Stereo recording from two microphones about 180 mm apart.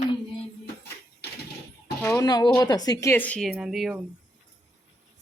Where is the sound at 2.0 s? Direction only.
20° left (ahead or behind); by 3.9 s 5° right (ahead or behind).